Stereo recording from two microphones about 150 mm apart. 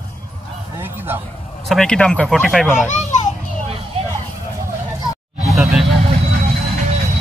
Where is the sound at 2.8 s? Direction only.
50° left (ahead or behind).